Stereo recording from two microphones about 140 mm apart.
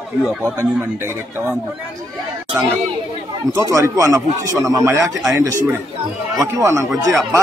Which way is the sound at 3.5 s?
20° right (ahead or behind).